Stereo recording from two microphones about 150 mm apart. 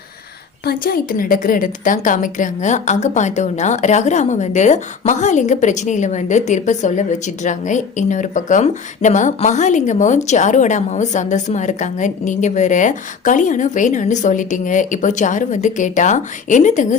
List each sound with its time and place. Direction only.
0.6 s a woman's voice: 85° left; by 17.0 s 55° left (ahead or behind)